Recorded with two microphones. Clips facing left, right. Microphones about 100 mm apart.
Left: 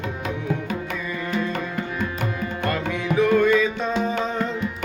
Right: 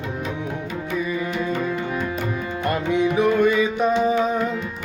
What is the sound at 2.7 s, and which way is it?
Music, 20° right (ahead or behind).